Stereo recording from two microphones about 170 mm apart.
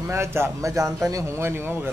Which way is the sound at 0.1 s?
15° right (ahead or behind).